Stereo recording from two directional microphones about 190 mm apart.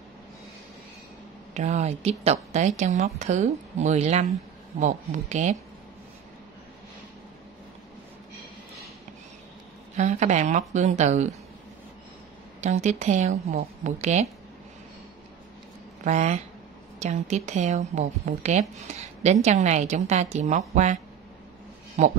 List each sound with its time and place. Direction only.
1.5 s speech: 40° right (ahead or behind)
9.9 s speech: 40° right (ahead or behind)
12.5 s speech: 35° right (ahead or behind)
16.0 s speech: 40° right (ahead or behind)